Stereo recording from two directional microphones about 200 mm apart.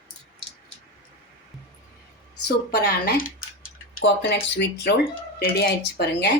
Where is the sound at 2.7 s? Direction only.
50° left (ahead or behind).